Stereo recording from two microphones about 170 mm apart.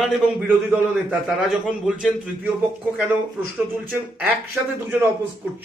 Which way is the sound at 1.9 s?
5° right (ahead or behind).